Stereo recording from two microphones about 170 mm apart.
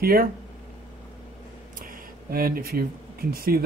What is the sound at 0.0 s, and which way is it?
Speech, 60° right (ahead or behind).